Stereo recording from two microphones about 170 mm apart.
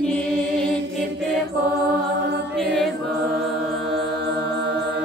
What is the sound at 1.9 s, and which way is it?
Music, 80° right.